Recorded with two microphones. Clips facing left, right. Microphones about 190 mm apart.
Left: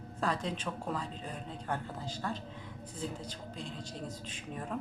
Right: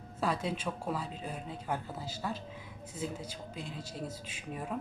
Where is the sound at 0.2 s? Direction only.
5° right (ahead or behind).